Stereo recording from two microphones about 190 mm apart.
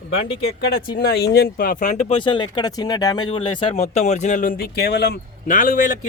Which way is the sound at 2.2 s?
25° left (ahead or behind).